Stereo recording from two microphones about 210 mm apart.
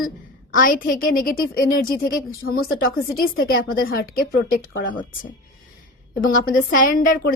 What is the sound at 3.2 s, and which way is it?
A woman's voice, 45° left (ahead or behind).